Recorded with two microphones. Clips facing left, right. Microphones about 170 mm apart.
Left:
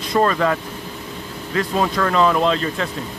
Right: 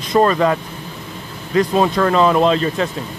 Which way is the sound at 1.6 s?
25° right (ahead or behind).